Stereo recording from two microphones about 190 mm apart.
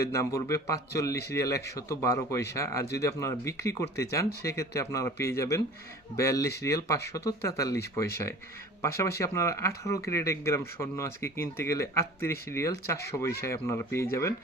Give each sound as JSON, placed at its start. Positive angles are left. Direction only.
{"t": 0.0, "sound": "speech", "side_deg": 15}
{"t": 8.8, "sound": "speech", "side_deg": 15}